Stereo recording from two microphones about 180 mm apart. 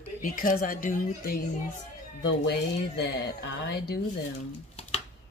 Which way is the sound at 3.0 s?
65° left (ahead or behind).